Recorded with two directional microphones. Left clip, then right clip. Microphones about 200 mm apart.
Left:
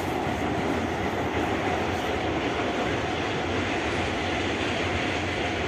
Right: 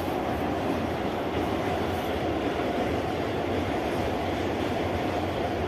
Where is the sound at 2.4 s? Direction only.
55° right (ahead or behind).